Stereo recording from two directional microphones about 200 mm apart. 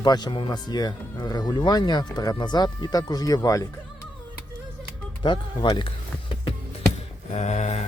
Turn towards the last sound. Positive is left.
turn(degrees=35)  # may be behind; listen again after turning